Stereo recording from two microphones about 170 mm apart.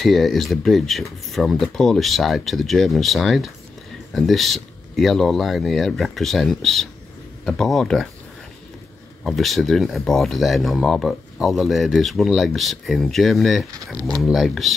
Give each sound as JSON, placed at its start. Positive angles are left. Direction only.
{"t": 0.0, "sound": "speech", "side_deg": 0}
{"t": 9.2, "sound": "speech", "side_deg": 0}
{"t": 13.9, "sound": "speech", "side_deg": -20}
{"t": 14.2, "sound": "speech", "side_deg": 0}